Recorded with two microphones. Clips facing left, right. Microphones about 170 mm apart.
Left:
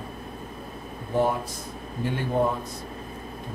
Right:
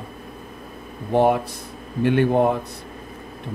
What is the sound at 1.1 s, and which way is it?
Speech, 70° right (ahead or behind).